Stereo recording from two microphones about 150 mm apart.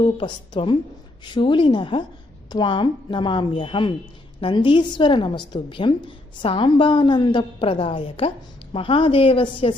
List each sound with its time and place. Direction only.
0.0 s a woman's voice: 30° left (ahead or behind)